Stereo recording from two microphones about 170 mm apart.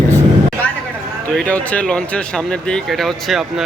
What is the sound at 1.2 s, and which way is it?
Speech, 10° left (ahead or behind).